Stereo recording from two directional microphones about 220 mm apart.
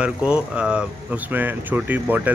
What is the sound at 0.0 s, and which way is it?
Speech, 5° right (ahead or behind).